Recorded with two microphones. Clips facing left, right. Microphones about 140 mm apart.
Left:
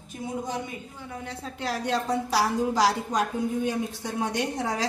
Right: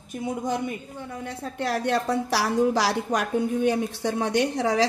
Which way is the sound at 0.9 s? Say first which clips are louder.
Right 3 dB; 50° right (ahead or behind).